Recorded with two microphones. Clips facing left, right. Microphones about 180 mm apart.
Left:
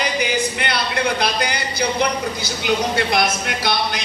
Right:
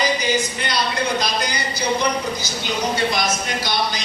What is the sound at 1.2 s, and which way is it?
Speech, 60° left (ahead or behind).